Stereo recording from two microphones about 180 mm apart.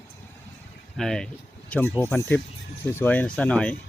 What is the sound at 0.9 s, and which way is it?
Speech, centre (ahead or behind).